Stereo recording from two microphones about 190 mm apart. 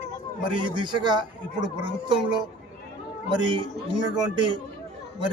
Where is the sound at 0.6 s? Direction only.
25° right (ahead or behind).